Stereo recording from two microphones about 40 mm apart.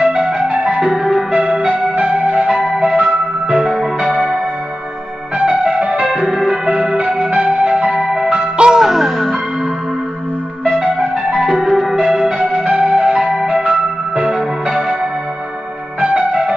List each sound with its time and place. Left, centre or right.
0.0 s music: right
0.4 s music: right
0.9 s music: centre
1.8 s music: right
2.7 s music: right
5.4 s music: right
8.1 s music: centre
8.8 s music: centre
10.7 s music: right
11.2 s music: centre
12.4 s music: right
16.0 s music: right